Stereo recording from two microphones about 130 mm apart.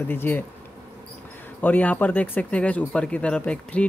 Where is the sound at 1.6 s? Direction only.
10° left (ahead or behind).